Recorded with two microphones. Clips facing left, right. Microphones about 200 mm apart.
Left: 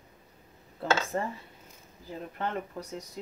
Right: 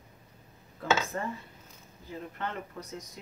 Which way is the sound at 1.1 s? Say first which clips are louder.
Left 3 dB; 35° left (ahead or behind).